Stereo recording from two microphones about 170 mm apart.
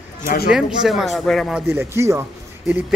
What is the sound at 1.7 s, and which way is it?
Speech, 15° right (ahead or behind).